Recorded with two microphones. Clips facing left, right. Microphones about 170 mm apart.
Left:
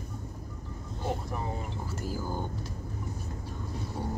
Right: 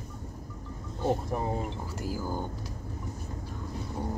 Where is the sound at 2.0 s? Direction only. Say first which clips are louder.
Right 2 dB; 10° right (ahead or behind).